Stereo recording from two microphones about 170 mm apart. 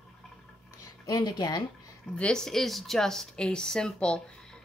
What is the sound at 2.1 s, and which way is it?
A woman's voice, 5° left (ahead or behind).